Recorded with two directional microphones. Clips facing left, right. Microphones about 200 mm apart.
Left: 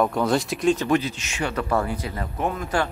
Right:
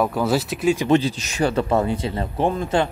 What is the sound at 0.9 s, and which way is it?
Speech, 30° right (ahead or behind).